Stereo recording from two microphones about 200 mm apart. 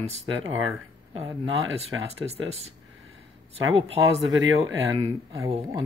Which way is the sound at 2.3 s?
30° right (ahead or behind).